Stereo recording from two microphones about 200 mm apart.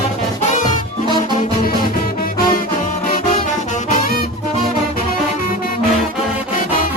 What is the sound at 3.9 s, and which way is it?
Music, 45° left (ahead or behind).